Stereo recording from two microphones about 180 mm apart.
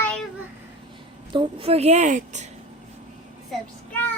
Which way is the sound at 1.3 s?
30° right (ahead or behind).